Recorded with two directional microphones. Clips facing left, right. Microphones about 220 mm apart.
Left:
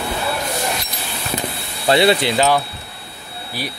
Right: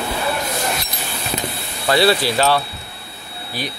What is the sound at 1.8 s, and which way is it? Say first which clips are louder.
Speech: left 1 dB; 20° left (ahead or behind).